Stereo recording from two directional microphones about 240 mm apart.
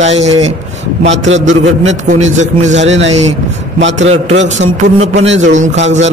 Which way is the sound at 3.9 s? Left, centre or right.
Right.